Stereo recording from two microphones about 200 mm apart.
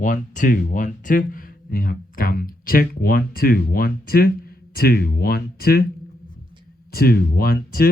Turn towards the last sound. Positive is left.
turn(degrees=50)  # may be behind; listen again after turning